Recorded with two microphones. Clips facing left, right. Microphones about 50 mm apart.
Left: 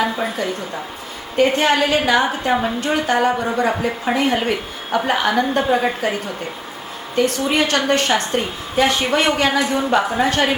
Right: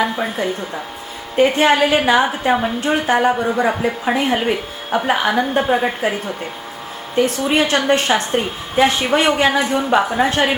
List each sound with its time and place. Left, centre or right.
1.4 s a woman's voice: right
2.8 s a woman's voice: right
3.2 s a woman's voice: centre
7.5 s a woman's voice: right
9.9 s a woman's voice: centre